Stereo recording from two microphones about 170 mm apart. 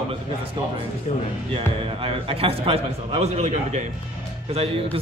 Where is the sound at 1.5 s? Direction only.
35° right (ahead or behind).